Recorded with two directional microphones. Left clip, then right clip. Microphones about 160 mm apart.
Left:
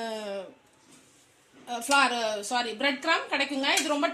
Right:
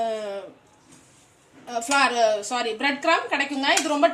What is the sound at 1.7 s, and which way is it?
A woman's voice, 30° left (ahead or behind).